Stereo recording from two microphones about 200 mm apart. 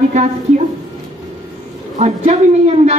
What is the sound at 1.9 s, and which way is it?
Speech, 35° right (ahead or behind).